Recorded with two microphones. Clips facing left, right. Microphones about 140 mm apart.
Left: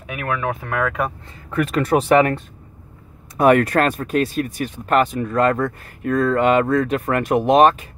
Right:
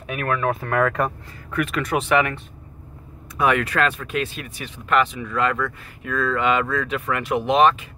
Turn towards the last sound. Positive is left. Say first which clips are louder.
# left 4 dB
turn(degrees=45)  # may be behind; listen again after turning